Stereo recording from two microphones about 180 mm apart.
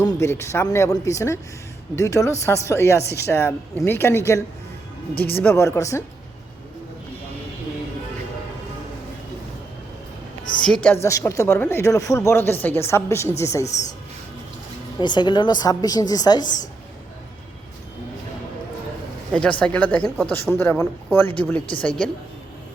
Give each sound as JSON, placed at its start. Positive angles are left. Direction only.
{"t": 0.0, "sound": "speech", "side_deg": 15}
{"t": 10.6, "sound": "a woman's voice", "side_deg": 5}
{"t": 11.0, "sound": "speech", "side_deg": 15}
{"t": 14.9, "sound": "a woman's voice", "side_deg": 25}
{"t": 19.3, "sound": "a woman's voice", "side_deg": 5}